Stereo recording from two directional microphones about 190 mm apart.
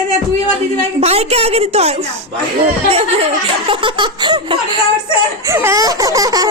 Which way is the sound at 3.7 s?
25° right (ahead or behind).